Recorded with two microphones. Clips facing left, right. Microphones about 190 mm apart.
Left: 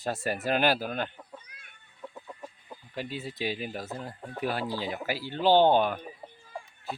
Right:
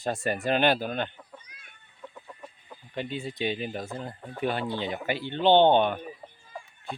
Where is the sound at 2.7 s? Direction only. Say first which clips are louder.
Right 3 dB; 5° left (ahead or behind).